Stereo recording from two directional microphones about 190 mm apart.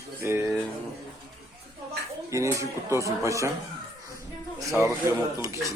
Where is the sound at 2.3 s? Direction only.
15° right (ahead or behind).